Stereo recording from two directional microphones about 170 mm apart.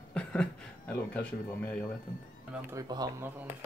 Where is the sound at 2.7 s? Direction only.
20° right (ahead or behind).